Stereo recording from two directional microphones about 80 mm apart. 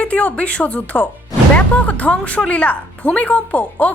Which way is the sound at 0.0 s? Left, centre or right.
Centre.